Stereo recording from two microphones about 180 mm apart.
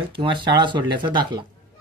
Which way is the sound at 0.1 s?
30° right (ahead or behind).